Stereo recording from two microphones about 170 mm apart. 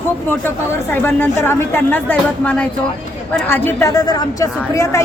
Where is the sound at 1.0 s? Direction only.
15° left (ahead or behind).